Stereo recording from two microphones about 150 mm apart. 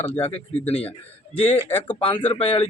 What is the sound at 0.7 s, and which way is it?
Speech, 40° left (ahead or behind).